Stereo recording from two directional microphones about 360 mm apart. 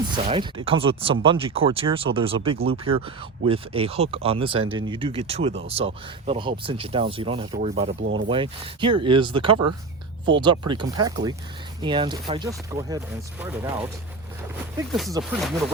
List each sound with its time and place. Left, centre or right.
0.2 s speech: centre
8.0 s speech: right
8.3 s speech: centre
14.9 s speech: centre